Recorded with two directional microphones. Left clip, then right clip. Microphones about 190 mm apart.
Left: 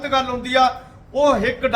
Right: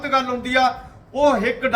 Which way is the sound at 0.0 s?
5° left (ahead or behind).